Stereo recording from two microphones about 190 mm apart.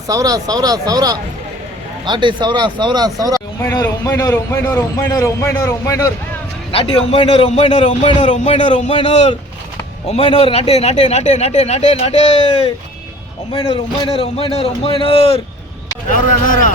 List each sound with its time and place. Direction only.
0.1 s speech: 20° right (ahead or behind)
3.6 s a man's voice: 15° left (ahead or behind)
6.7 s speech: 30° left (ahead or behind)
8.9 s a man's voice: 25° left (ahead or behind)
13.5 s a man's voice: 20° left (ahead or behind)
16.0 s speech: 45° left (ahead or behind)